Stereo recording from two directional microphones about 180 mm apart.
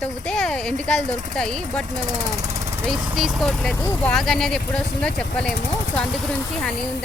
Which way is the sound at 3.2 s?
Centre (ahead or behind).